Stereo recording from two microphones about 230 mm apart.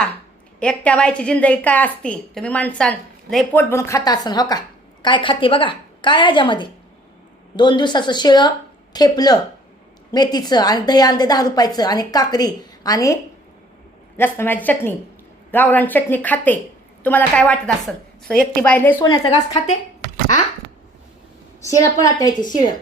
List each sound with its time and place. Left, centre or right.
0.6 s a woman's voice: centre
14.2 s a woman's voice: centre
21.8 s a woman's voice: centre